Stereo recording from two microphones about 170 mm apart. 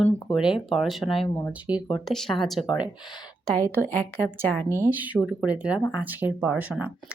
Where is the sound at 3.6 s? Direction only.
10° left (ahead or behind).